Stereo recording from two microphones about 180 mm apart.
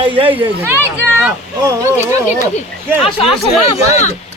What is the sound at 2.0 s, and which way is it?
Speech, 40° left (ahead or behind).